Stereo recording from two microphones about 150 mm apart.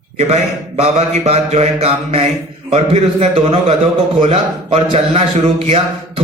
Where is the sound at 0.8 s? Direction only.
45° right (ahead or behind).